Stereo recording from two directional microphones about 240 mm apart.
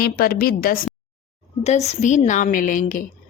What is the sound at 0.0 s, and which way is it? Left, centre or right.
Speech, left.